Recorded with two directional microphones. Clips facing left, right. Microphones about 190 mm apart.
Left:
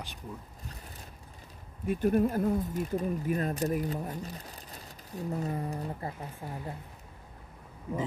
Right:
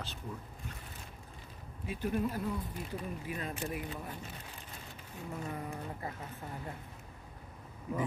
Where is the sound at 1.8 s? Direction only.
50° left (ahead or behind); by 6.6 s 30° left (ahead or behind).